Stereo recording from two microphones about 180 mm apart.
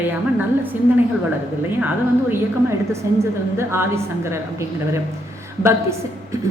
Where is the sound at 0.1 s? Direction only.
10° right (ahead or behind).